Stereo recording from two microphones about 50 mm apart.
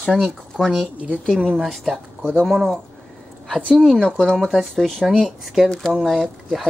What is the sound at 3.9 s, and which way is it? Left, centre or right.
Speech, centre.